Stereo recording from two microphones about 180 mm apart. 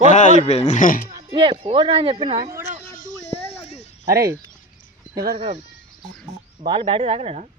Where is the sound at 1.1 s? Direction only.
25° right (ahead or behind).